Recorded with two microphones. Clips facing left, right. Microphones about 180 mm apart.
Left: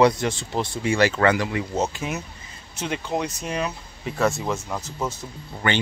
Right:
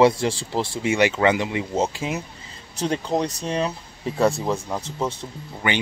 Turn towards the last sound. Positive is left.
turn(degrees=-10)  # may be behind; listen again after turning